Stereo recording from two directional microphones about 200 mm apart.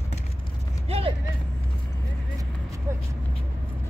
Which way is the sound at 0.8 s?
30° right (ahead or behind).